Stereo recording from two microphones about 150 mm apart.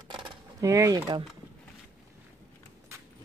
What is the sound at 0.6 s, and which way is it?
Speech, 20° right (ahead or behind).